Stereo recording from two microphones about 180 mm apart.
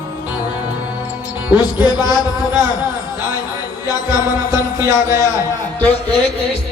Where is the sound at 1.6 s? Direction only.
25° left (ahead or behind).